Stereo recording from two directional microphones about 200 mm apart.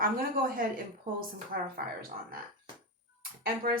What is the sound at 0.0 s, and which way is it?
Speech, 45° right (ahead or behind).